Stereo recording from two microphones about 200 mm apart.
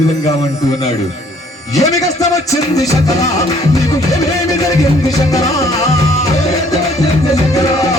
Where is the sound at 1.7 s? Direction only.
15° left (ahead or behind).